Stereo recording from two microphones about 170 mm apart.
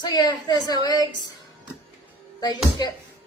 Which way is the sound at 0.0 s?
25° left (ahead or behind).